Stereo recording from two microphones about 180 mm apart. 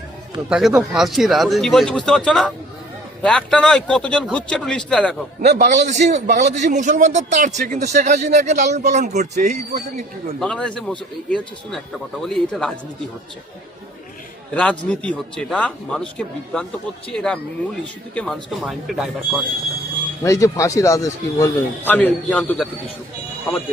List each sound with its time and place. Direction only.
0.5 s speech: 5° right (ahead or behind)
5.5 s a man's voice: 45° right (ahead or behind)
10.4 s speech: 5° left (ahead or behind)
14.5 s speech: 5° left (ahead or behind)
20.2 s speech: 15° left (ahead or behind)